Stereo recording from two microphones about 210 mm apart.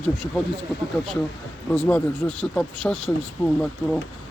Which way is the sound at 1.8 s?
5° left (ahead or behind).